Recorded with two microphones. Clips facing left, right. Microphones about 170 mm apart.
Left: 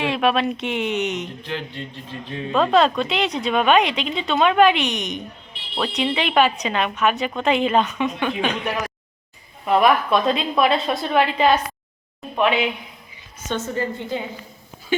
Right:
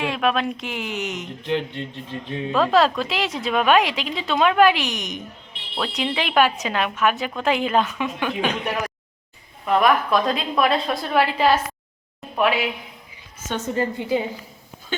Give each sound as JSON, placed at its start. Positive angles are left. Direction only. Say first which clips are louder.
{"t": 0.0, "sound": "a woman's voice", "louder": "left 2 dB", "side_deg": 0}
{"t": 1.5, "sound": "speech", "louder": "right 5 dB", "side_deg": -20}
{"t": 2.5, "sound": "a woman's voice", "louder": "left 1 dB", "side_deg": 0}